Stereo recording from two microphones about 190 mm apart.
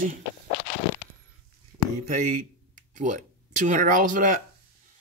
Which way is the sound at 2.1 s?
45° right (ahead or behind).